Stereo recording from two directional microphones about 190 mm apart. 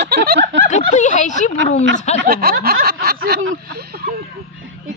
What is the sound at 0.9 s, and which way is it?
Speech, 40° left (ahead or behind).